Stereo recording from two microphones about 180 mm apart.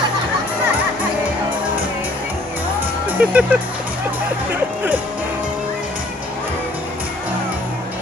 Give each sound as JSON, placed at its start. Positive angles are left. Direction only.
{"t": 3.1, "sound": "speech", "side_deg": -10}